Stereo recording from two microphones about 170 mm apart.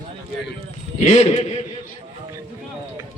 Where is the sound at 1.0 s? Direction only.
40° left (ahead or behind).